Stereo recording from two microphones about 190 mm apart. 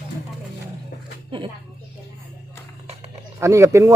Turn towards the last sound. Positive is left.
turn(degrees=-15)  # may be behind; listen again after turning